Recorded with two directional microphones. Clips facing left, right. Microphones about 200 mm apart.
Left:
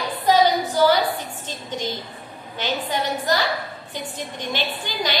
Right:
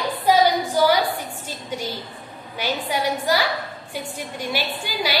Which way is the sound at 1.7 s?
10° right (ahead or behind).